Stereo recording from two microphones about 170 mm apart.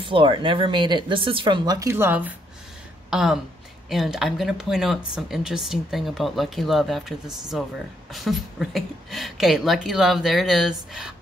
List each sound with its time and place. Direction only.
0.0 s speech: 30° right (ahead or behind); by 11.1 s 5° right (ahead or behind)